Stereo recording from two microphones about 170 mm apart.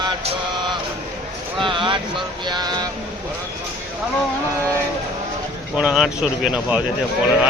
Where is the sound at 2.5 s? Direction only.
25° right (ahead or behind).